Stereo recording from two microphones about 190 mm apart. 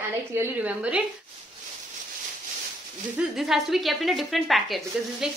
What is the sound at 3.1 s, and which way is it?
A woman's voice, centre (ahead or behind).